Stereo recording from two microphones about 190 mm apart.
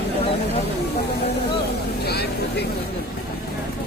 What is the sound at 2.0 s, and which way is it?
Vehicle, 60° left (ahead or behind).